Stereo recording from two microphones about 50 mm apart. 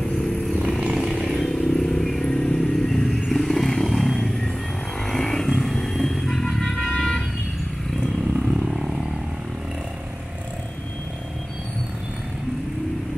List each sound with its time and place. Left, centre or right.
0.9 s vehicle: centre
1.3 s vehicle: centre
6.8 s vehicle: centre
8.0 s vehicle: centre